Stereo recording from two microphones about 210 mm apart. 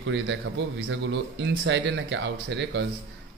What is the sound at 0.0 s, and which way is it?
Speech, 60° right (ahead or behind).